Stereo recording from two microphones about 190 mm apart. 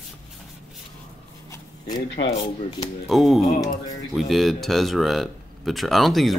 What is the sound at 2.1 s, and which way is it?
Speech, 30° left (ahead or behind).